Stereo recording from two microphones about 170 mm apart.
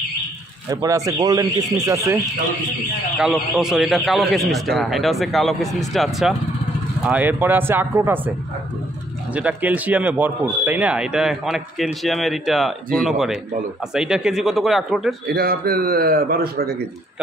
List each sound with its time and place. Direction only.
0.7 s speech: 20° right (ahead or behind)
3.2 s a man's voice: 5° right (ahead or behind)
9.3 s a man's voice: 10° right (ahead or behind)
15.2 s a man's voice: 65° right (ahead or behind)